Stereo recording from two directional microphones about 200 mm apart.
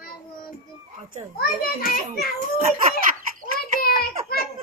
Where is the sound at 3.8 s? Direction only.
50° left (ahead or behind).